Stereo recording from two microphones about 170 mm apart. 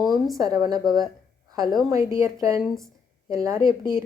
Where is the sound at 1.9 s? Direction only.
20° right (ahead or behind).